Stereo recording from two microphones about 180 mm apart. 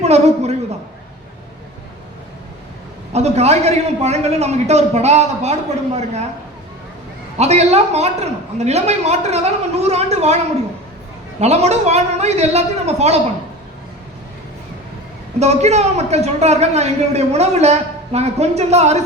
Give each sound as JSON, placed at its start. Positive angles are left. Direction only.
{"t": 0.0, "sound": "a man's voice", "side_deg": -35}
{"t": 3.1, "sound": "a man's voice", "side_deg": -35}
{"t": 7.3, "sound": "a man's voice", "side_deg": -35}
{"t": 11.3, "sound": "a man's voice", "side_deg": -35}
{"t": 15.4, "sound": "a man's voice", "side_deg": -35}